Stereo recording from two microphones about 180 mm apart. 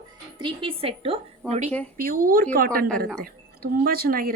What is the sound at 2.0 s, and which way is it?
A woman's voice, 50° right (ahead or behind).